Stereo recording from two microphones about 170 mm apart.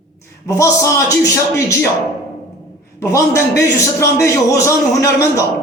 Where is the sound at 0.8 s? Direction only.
15° left (ahead or behind).